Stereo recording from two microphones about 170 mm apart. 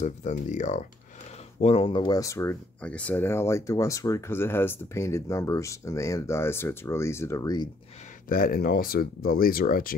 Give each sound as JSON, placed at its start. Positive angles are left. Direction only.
{"t": 0.0, "sound": "speech", "side_deg": 45}
{"t": 8.3, "sound": "speech", "side_deg": 60}